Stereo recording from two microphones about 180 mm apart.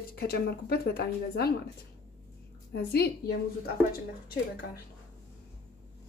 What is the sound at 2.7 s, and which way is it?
Speech, 60° left (ahead or behind).